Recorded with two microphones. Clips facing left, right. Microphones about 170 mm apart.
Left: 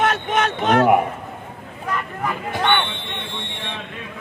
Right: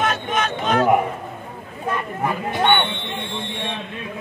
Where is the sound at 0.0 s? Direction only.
65° left (ahead or behind).